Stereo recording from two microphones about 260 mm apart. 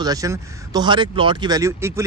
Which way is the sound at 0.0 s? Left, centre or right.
Centre.